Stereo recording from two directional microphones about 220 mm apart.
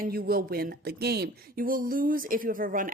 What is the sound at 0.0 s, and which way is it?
Speech, 45° right (ahead or behind).